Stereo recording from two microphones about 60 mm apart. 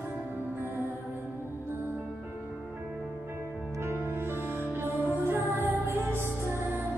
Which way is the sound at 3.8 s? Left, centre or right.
Right.